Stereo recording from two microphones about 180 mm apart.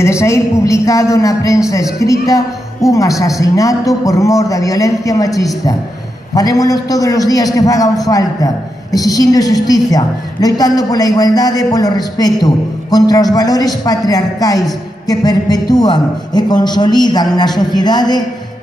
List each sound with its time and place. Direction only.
0.0 s a woman's voice: 15° left (ahead or behind)